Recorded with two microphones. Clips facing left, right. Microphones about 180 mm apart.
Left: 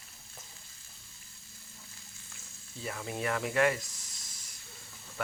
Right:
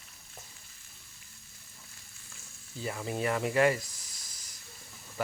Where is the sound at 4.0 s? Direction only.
25° left (ahead or behind).